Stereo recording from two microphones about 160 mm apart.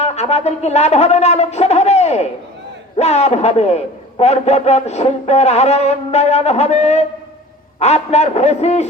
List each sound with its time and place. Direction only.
0.0 s a man's voice: 45° left (ahead or behind)